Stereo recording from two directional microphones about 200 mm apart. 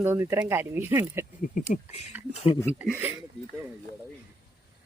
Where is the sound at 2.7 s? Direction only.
10° right (ahead or behind).